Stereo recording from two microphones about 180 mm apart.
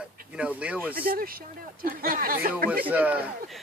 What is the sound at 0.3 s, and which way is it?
Speech, 5° right (ahead or behind).